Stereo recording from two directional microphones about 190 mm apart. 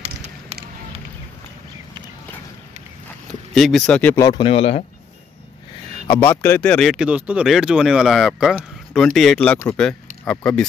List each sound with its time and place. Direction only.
3.3 s speech: centre (ahead or behind)
4.4 s speech: 30° left (ahead or behind)
6.0 s speech: 15° left (ahead or behind)